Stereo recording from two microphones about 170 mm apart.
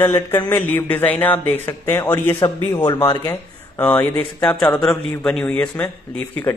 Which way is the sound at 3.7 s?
10° left (ahead or behind).